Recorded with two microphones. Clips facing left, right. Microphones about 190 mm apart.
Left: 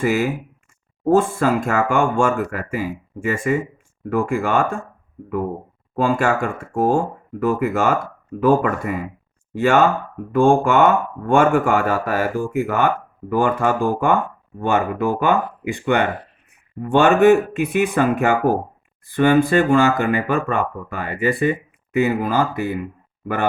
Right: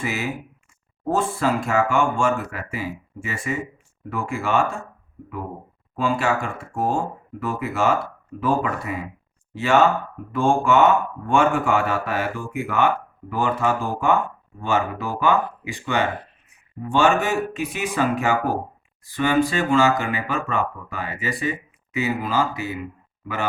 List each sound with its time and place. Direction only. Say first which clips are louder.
0.0 s speech: left 8 dB; 50° left (ahead or behind)
6.0 s speech: left 4 dB; 50° left (ahead or behind)